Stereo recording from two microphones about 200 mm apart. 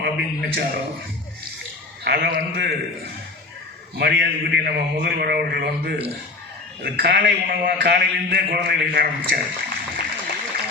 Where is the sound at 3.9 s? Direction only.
55° right (ahead or behind).